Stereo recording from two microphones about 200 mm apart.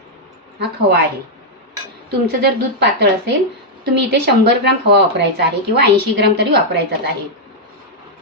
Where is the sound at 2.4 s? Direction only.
55° right (ahead or behind).